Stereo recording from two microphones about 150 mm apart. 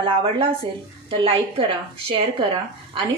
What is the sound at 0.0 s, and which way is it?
A woman's voice, 35° right (ahead or behind).